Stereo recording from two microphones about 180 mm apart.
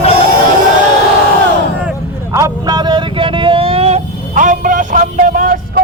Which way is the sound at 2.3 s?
20° right (ahead or behind).